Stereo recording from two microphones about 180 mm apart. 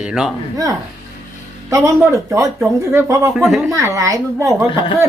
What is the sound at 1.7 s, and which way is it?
A woman's voice, 15° right (ahead or behind).